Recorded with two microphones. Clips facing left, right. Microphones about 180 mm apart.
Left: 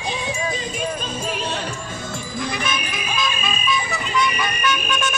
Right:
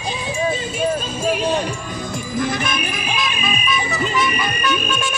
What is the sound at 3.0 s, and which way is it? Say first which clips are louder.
Music: right 1 dB; 60° right (ahead or behind).